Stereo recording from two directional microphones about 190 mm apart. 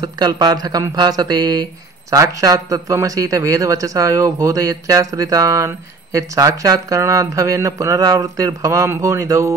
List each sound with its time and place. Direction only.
0.0 s speech: 20° right (ahead or behind)